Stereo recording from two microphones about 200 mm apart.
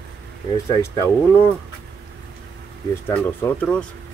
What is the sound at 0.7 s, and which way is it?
Speech, 15° left (ahead or behind).